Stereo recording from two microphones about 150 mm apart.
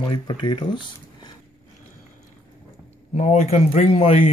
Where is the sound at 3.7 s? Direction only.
40° left (ahead or behind).